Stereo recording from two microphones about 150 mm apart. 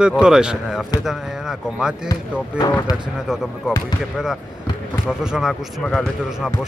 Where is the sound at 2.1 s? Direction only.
25° left (ahead or behind).